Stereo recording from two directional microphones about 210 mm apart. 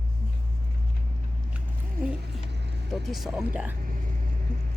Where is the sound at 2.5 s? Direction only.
55° right (ahead or behind).